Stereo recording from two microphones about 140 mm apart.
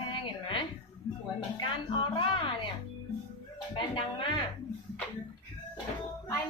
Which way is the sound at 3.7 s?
35° left (ahead or behind).